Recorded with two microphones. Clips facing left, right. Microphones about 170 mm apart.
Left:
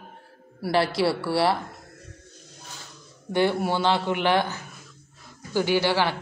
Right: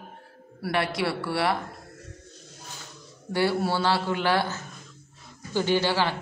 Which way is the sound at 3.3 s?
15° left (ahead or behind).